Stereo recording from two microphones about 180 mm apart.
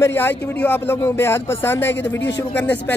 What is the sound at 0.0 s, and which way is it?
Speech, 10° left (ahead or behind).